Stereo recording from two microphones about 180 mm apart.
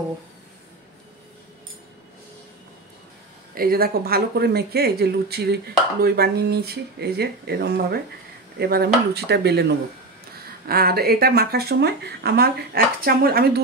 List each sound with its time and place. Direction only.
3.5 s speech: 55° right (ahead or behind)